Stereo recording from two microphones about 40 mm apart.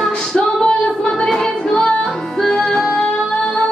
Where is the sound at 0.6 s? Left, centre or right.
Left.